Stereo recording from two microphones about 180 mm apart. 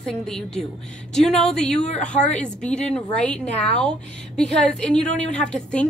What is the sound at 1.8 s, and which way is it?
Speech, 40° left (ahead or behind).